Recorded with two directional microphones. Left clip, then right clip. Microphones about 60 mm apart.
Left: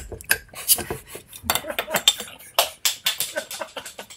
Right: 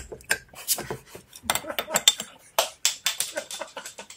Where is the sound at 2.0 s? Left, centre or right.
Right.